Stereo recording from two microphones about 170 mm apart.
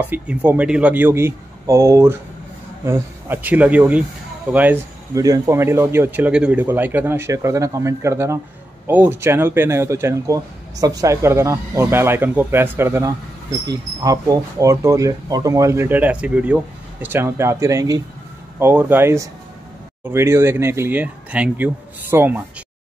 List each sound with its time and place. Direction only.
0.0 s speech: 10° right (ahead or behind)